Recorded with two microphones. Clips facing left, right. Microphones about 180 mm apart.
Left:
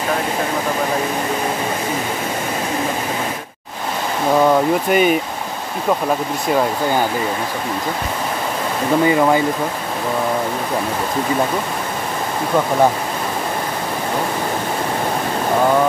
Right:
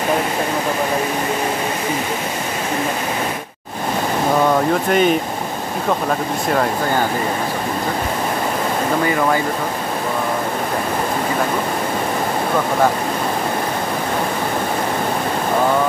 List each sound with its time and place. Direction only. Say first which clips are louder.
4.8 s speech: even; 5° left (ahead or behind)
9.0 s speech: left 5 dB; 20° left (ahead or behind)